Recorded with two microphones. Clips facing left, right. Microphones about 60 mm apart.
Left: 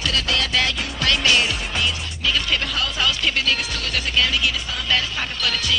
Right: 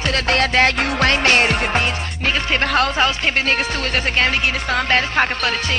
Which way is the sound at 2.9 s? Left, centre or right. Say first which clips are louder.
Right 4 dB; right.